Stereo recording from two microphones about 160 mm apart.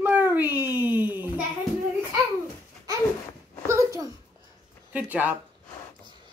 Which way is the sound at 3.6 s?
20° right (ahead or behind).